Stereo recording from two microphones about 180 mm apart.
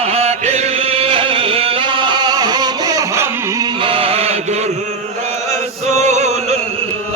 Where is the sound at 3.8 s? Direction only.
30° right (ahead or behind).